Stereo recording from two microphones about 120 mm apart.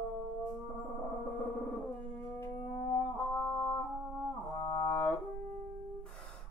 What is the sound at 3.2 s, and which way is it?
Music, 10° left (ahead or behind).